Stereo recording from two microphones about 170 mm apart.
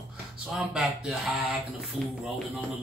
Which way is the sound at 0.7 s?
5° right (ahead or behind).